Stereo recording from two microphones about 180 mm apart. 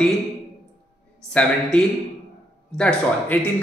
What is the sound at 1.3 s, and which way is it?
A man's voice, 5° left (ahead or behind).